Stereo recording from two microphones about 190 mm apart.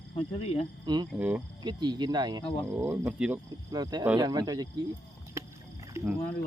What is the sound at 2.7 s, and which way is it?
Speech, 10° right (ahead or behind).